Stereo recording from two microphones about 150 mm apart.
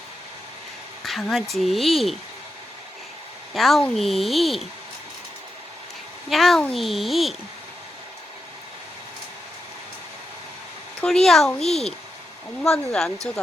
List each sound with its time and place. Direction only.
1.0 s speech: centre (ahead or behind)
3.5 s speech: centre (ahead or behind)
6.3 s speech: centre (ahead or behind)
11.0 s speech: 5° left (ahead or behind)